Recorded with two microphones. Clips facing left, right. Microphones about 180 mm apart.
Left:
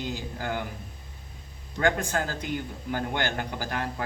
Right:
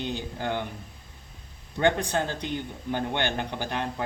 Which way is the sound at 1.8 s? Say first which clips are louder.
Right 2 dB; 30° right (ahead or behind).